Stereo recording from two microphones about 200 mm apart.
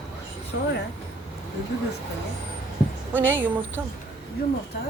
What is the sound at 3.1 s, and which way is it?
Speech, 10° right (ahead or behind).